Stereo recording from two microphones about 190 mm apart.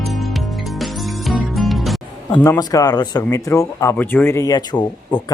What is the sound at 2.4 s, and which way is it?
Speech, 15° left (ahead or behind).